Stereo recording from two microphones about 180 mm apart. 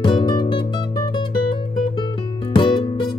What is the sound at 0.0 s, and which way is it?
Music, 25° left (ahead or behind).